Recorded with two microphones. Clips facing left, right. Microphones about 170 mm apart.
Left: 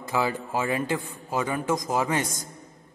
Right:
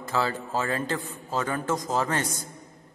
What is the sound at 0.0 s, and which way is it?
A man's voice, 15° left (ahead or behind).